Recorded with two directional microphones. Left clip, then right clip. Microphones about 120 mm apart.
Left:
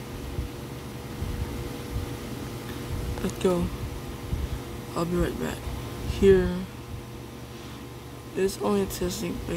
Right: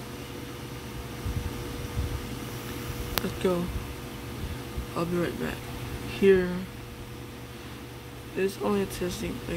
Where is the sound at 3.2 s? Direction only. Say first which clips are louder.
Left 3 dB; 20° left (ahead or behind).